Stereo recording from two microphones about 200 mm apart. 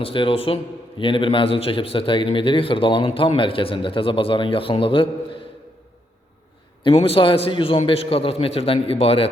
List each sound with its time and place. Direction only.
0.0 s a man's voice: 25° left (ahead or behind)
6.8 s a man's voice: 30° left (ahead or behind)